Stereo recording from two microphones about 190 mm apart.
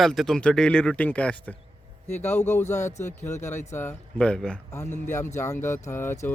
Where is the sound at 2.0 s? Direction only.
35° left (ahead or behind).